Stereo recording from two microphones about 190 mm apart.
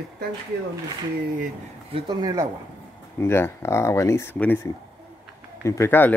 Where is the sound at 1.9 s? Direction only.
20° right (ahead or behind).